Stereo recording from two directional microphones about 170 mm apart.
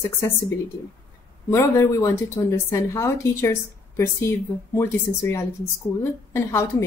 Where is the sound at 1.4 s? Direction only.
20° left (ahead or behind).